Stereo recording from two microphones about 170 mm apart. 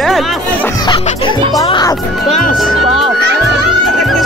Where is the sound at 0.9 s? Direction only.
30° left (ahead or behind).